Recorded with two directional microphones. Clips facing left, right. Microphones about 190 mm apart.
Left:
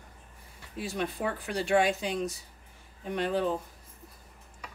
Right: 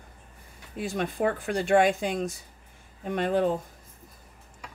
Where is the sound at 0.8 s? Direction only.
50° right (ahead or behind).